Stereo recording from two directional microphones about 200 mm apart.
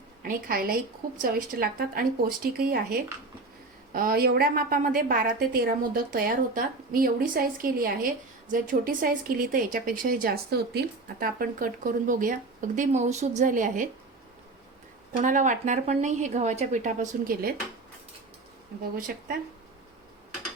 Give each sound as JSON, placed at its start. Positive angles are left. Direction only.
{"t": 0.2, "sound": "a woman's voice", "side_deg": -45}
{"t": 15.2, "sound": "a woman's voice", "side_deg": -40}
{"t": 18.9, "sound": "a woman's voice", "side_deg": -45}